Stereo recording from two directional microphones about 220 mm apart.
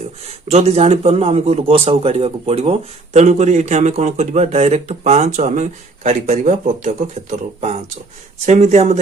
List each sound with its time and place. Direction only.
0.4 s a man's voice: 30° right (ahead or behind)